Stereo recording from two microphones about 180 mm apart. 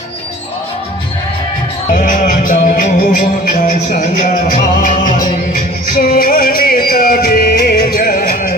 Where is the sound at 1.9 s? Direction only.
50° left (ahead or behind).